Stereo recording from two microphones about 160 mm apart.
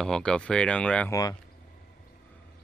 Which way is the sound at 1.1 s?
20° left (ahead or behind).